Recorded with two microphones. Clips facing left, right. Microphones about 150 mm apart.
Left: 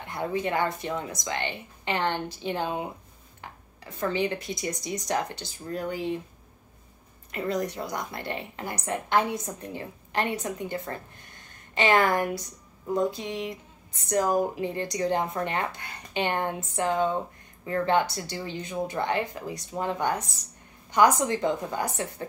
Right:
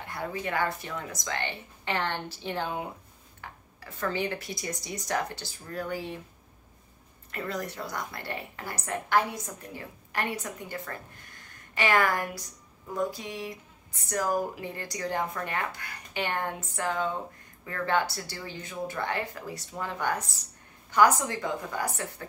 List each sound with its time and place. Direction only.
0.1 s speech: 20° left (ahead or behind)
7.2 s speech: 20° left (ahead or behind)